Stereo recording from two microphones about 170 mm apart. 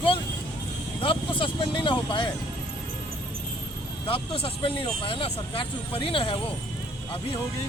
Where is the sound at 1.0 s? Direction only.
30° left (ahead or behind).